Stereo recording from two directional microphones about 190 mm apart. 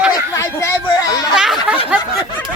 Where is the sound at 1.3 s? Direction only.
Centre (ahead or behind).